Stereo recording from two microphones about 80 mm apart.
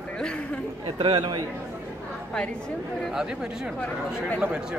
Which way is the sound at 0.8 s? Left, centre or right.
Right.